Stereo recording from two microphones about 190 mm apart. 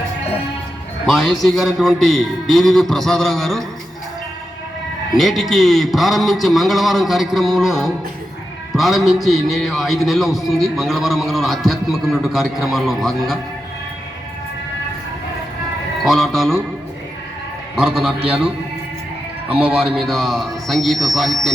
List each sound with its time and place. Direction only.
1.0 s a man's voice: centre (ahead or behind)
5.1 s a man's voice: centre (ahead or behind)
16.0 s a man's voice: centre (ahead or behind)
17.7 s a man's voice: 5° right (ahead or behind)
19.5 s a man's voice: 5° right (ahead or behind)